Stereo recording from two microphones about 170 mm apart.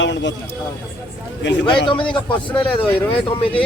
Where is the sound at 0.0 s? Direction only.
90° left.